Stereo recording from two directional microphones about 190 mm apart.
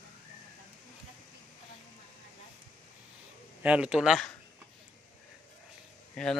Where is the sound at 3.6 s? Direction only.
5° right (ahead or behind).